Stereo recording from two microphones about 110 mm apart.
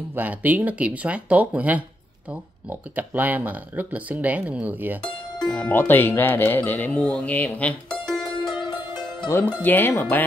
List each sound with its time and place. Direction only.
0.1 s speech: 15° right (ahead or behind)
5.0 s speech: 10° left (ahead or behind)
8.5 s music: 45° left (ahead or behind)
9.6 s speech: 15° left (ahead or behind)